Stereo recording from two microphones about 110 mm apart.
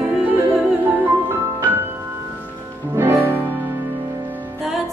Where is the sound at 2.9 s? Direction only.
20° right (ahead or behind).